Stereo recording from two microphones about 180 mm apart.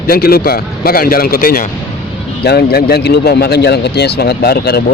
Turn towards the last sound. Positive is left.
turn(degrees=60)  # may be behind; listen again after turning